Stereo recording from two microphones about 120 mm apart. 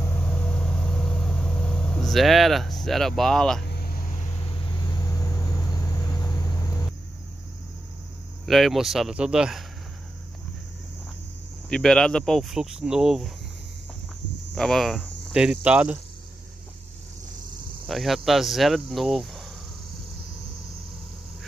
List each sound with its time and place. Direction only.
0.2 s vehicle: 10° left (ahead or behind)
4.0 s vehicle: 75° left (ahead or behind)
4.5 s vehicle: 40° left (ahead or behind)
8.5 s speech: centre (ahead or behind)
11.7 s speech: 5° left (ahead or behind)
14.5 s cricket: 5° left (ahead or behind)
17.8 s speech: centre (ahead or behind)